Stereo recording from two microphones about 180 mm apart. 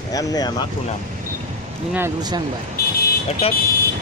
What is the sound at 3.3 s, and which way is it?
Speech, 35° left (ahead or behind).